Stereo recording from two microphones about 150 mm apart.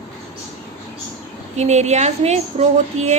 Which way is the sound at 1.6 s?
50° right (ahead or behind).